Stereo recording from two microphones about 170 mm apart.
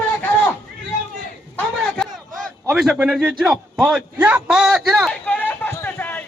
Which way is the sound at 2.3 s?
5° right (ahead or behind).